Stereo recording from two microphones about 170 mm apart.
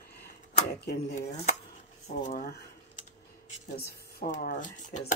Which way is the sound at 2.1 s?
45° left (ahead or behind).